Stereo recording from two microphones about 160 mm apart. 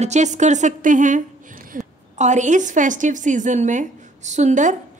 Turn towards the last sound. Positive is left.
turn(degrees=-50)  # may be behind; listen again after turning